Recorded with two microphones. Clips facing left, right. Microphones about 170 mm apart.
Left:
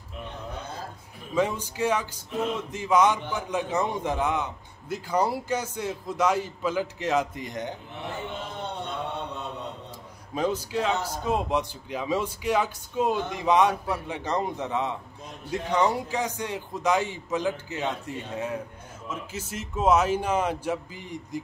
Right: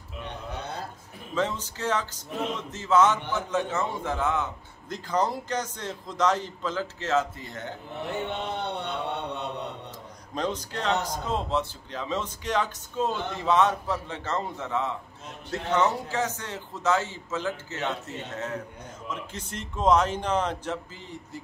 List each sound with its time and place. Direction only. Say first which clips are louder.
1.3 s a man's voice: left 3 dB; 10° left (ahead or behind)
8.3 s a sound: right 3 dB; 70° right (ahead or behind)
10.3 s a man's voice: left 4 dB; 10° left (ahead or behind)